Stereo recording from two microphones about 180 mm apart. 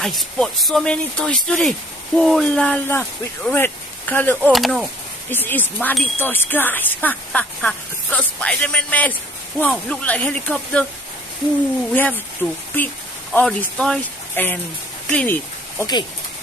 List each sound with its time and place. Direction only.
0.0 s speech: centre (ahead or behind)
4.4 s speech: centre (ahead or behind)
5.3 s speech: 10° left (ahead or behind)
11.9 s speech: 10° left (ahead or behind)
15.8 s speech: 25° left (ahead or behind)